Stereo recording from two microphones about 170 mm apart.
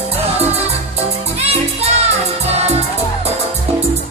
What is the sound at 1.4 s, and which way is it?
Music, 35° right (ahead or behind).